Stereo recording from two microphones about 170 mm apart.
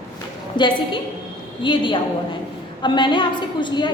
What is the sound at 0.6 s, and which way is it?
A woman's voice, 25° left (ahead or behind).